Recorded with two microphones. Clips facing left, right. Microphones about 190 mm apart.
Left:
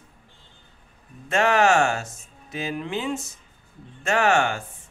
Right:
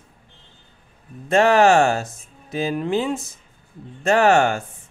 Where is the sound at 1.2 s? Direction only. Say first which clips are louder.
Right 5 dB; 35° right (ahead or behind).